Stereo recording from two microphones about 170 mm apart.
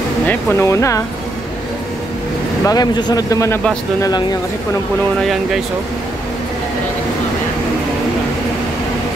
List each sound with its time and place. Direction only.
0.3 s speech: 10° left (ahead or behind)
2.6 s speech: 20° left (ahead or behind)
5.2 s speech: centre (ahead or behind)